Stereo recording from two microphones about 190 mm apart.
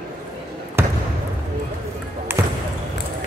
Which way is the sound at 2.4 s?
15° right (ahead or behind).